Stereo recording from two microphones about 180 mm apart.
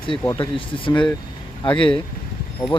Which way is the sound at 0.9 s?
5° left (ahead or behind).